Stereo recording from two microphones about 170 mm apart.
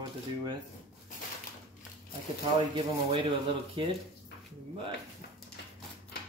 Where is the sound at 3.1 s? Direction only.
30° right (ahead or behind).